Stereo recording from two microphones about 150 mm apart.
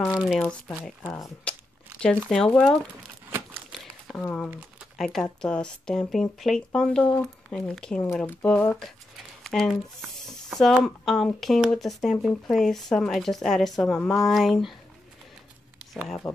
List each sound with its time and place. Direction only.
0.1 s speech: 5° right (ahead or behind)
0.4 s speech: 5° left (ahead or behind)
1.0 s speech: 20° left (ahead or behind)
2.2 s speech: 5° left (ahead or behind)
3.3 s crumpling: 15° right (ahead or behind)
4.2 s speech: 10° left (ahead or behind)
9.4 s a sound: 5° left (ahead or behind)
10.6 s speech: centre (ahead or behind)
15.8 s speech: centre (ahead or behind)